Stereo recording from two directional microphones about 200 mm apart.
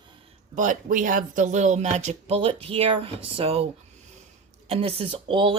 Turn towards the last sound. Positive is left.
turn(degrees=-25)  # may be behind; listen again after turning